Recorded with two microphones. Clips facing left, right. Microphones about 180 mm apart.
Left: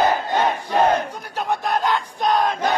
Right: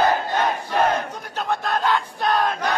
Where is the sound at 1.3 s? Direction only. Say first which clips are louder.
Left 2 dB; 15° left (ahead or behind).